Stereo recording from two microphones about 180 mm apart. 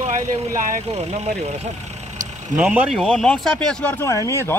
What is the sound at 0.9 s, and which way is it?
Speech, 35° right (ahead or behind).